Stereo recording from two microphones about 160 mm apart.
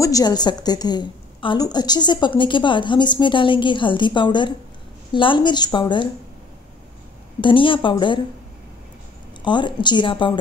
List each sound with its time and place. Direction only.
0.0 s a woman's voice: 25° left (ahead or behind)
7.3 s speech: 30° left (ahead or behind)
9.4 s a woman's voice: 30° left (ahead or behind)